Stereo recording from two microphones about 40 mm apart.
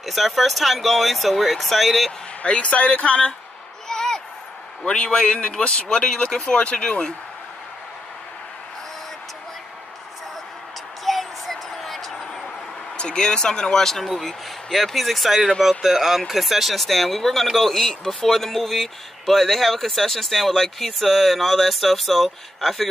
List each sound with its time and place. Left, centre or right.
0.0 s speech: centre
2.4 s speech: left
3.9 s a sound: centre
4.8 s speech: left
11.1 s a sound: centre
12.9 s speech: left; by 22.8 s centre